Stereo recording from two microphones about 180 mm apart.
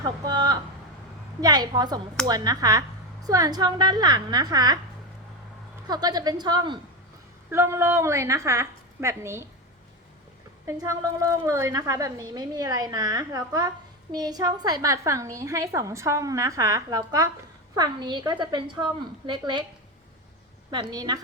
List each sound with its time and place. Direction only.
0.0 s a woman's voice: 25° right (ahead or behind)
5.9 s a woman's voice: 20° right (ahead or behind)
10.7 s a woman's voice: 15° right (ahead or behind)
20.9 s a woman's voice: 20° right (ahead or behind)